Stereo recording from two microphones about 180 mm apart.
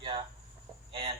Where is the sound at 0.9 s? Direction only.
30° right (ahead or behind).